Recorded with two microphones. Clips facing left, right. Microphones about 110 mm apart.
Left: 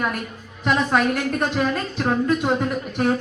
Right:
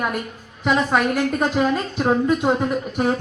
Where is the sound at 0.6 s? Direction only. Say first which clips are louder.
Right 1 dB; 10° right (ahead or behind).